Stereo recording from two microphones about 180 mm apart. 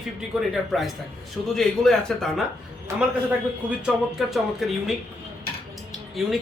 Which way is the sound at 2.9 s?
15° right (ahead or behind).